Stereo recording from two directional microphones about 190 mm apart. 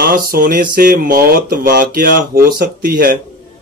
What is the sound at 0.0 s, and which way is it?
Speech, 50° right (ahead or behind).